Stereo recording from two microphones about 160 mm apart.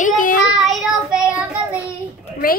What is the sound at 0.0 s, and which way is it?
Child singing, 60° left (ahead or behind).